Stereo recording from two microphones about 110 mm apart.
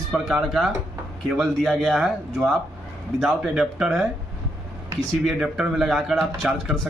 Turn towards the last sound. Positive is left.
turn(degrees=-5)  # may be behind; listen again after turning